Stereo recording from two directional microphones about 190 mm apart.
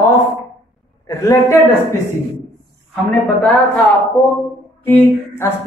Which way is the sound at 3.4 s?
10° left (ahead or behind).